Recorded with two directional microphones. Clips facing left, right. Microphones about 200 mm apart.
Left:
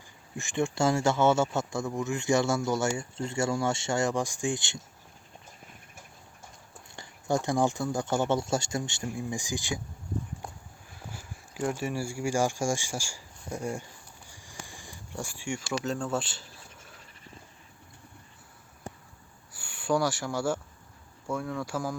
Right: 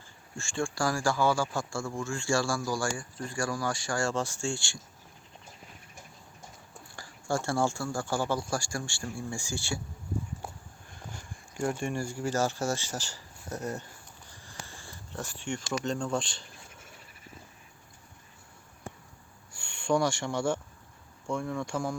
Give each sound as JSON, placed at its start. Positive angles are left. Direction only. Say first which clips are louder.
{"t": 0.3, "sound": "speech", "louder": "left 4 dB", "side_deg": 20}
{"t": 6.9, "sound": "speech", "louder": "left 3 dB", "side_deg": 20}
{"t": 10.9, "sound": "speech", "louder": "left 1 dB", "side_deg": 5}
{"t": 14.3, "sound": "a sound", "louder": "even", "side_deg": 10}
{"t": 15.8, "sound": "speech", "louder": "even", "side_deg": 5}
{"t": 19.5, "sound": "speech", "louder": "even", "side_deg": 5}